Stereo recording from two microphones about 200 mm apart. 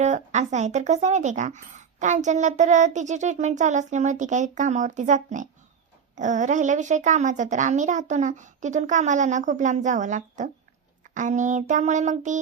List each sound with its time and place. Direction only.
0.0 s speech: 35° right (ahead or behind)